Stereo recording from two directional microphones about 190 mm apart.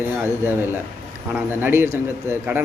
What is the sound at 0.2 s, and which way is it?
A man's voice, 10° right (ahead or behind).